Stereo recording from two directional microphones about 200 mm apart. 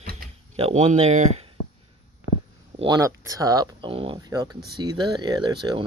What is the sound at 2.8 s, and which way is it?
Speech, 15° right (ahead or behind).